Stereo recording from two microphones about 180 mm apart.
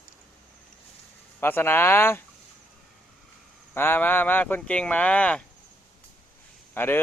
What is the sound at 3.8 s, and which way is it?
Speech, 10° left (ahead or behind).